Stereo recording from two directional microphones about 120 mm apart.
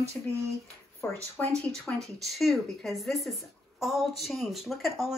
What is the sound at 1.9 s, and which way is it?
Speech, centre (ahead or behind).